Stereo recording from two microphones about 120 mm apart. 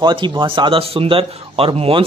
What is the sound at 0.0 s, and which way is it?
Speech, 40° right (ahead or behind).